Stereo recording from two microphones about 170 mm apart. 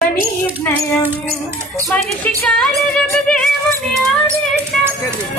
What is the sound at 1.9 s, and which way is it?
Speech, 10° left (ahead or behind).